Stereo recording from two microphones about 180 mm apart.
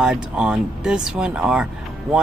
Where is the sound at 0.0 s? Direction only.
5° right (ahead or behind).